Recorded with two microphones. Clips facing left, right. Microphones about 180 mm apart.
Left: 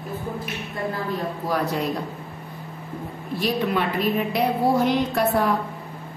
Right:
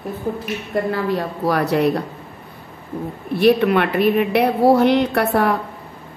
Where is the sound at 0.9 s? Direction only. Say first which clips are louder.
Right 6 dB; 75° right (ahead or behind).